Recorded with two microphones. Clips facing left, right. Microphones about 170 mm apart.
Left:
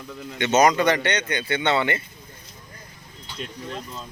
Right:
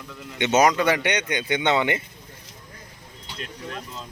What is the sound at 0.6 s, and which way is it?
Speech, 5° right (ahead or behind).